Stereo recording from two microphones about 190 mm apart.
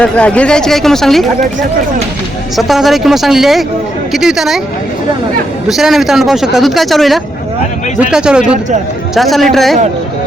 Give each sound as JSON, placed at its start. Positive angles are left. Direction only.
{"t": 0.0, "sound": "speech", "side_deg": 5}
{"t": 2.6, "sound": "speech", "side_deg": 0}
{"t": 5.6, "sound": "speech", "side_deg": 0}